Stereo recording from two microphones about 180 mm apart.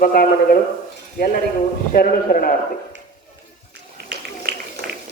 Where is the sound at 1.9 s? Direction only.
55° left (ahead or behind).